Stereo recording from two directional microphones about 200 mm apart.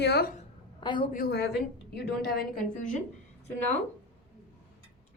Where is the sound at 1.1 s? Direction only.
50° left (ahead or behind).